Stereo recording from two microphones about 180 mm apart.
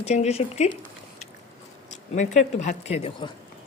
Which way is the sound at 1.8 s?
40° left (ahead or behind).